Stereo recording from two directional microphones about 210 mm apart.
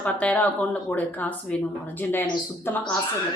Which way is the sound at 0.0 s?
5° left (ahead or behind).